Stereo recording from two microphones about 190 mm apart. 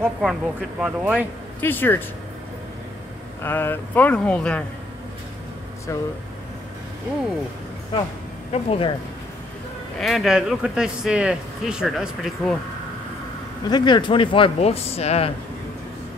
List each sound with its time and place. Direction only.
0.0 s speech: 5° right (ahead or behind)
1.6 s speech: 10° left (ahead or behind)
3.4 s speech: 10° left (ahead or behind)
5.9 s speech: 15° left (ahead or behind)
8.6 s speech: 30° left (ahead or behind)
9.9 s speech: centre (ahead or behind)
13.7 s speech: 25° left (ahead or behind)